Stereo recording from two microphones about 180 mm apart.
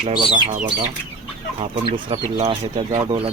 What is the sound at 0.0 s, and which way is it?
Speech, 25° right (ahead or behind).